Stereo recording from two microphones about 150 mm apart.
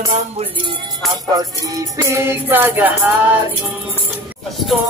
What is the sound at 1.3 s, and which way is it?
Music, 25° right (ahead or behind).